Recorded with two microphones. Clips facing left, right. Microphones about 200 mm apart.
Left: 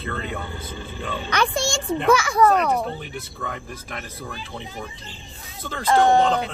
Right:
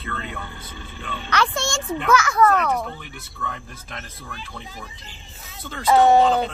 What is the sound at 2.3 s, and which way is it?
Speech, 10° left (ahead or behind).